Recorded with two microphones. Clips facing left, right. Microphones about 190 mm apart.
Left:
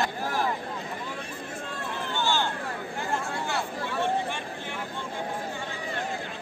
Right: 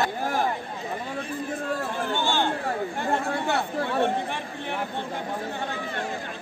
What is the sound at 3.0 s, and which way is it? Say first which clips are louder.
Chatter: right 2 dB; 60° right (ahead or behind).